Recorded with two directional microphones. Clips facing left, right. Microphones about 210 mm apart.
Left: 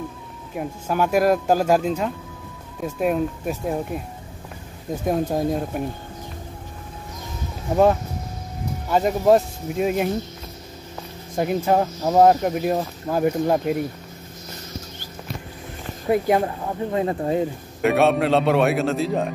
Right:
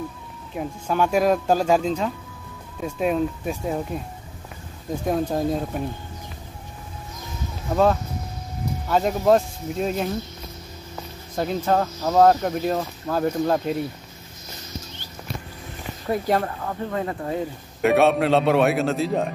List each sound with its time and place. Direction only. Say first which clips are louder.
0.6 s a man's voice: even; 5° left (ahead or behind)
5.0 s a man's voice: left 1 dB; 5° left (ahead or behind)
7.7 s speech: left 2 dB; 15° left (ahead or behind)
11.3 s speech: left 2 dB; 10° left (ahead or behind)
16.1 s speech: left 3 dB; 15° left (ahead or behind)
17.8 s a man's voice: even; centre (ahead or behind)